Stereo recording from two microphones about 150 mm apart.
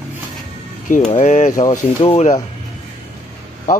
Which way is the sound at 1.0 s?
50° left (ahead or behind).